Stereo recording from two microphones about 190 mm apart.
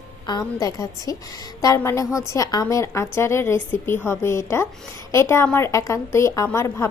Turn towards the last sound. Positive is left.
turn(degrees=15)  # may be behind; listen again after turning